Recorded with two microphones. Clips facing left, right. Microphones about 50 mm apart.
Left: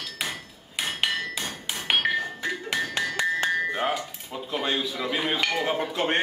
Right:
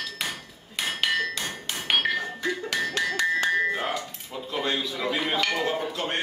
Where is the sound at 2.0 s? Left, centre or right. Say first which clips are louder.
Left 1 dB; centre.